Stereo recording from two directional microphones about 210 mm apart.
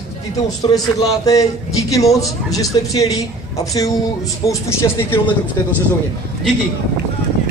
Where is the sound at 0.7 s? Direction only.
15° left (ahead or behind).